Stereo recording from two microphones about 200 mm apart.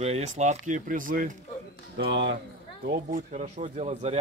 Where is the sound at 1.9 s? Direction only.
65° right (ahead or behind).